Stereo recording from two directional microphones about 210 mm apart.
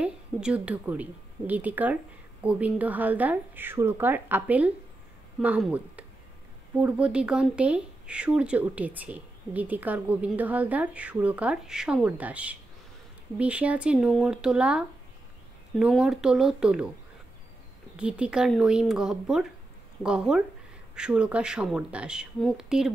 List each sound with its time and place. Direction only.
0.0 s speech: 5° right (ahead or behind)
17.9 s speech: 5° right (ahead or behind)